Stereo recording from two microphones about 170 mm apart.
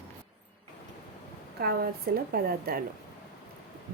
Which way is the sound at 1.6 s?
65° right (ahead or behind).